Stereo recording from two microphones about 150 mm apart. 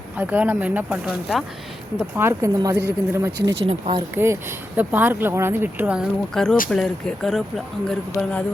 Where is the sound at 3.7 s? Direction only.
35° right (ahead or behind).